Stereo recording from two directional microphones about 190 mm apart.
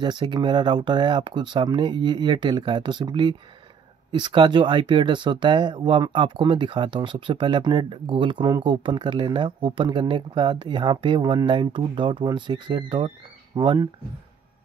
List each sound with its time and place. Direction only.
0.0 s speech: 25° right (ahead or behind)